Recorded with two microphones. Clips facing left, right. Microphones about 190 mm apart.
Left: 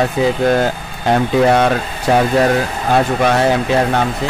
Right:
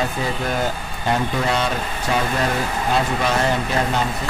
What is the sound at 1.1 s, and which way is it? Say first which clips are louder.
Speech: left 11 dB; 60° left (ahead or behind).